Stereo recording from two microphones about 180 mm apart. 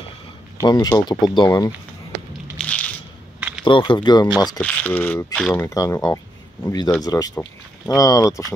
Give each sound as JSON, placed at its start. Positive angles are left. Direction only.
{"t": 0.6, "sound": "speech", "side_deg": 20}
{"t": 2.6, "sound": "a sound", "side_deg": 5}
{"t": 3.3, "sound": "a sound", "side_deg": -10}
{"t": 3.6, "sound": "speech", "side_deg": 25}
{"t": 4.6, "sound": "speech", "side_deg": 10}
{"t": 5.7, "sound": "speech", "side_deg": 20}